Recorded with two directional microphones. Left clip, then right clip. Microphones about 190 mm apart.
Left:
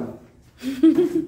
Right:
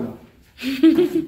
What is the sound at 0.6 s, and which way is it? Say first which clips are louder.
Speech: right 2 dB; 10° left (ahead or behind).